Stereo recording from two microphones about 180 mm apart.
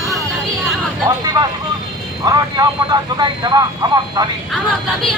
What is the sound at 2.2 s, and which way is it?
Speech, 20° right (ahead or behind).